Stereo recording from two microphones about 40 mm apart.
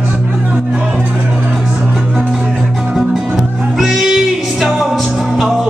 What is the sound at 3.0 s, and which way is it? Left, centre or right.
Music, centre.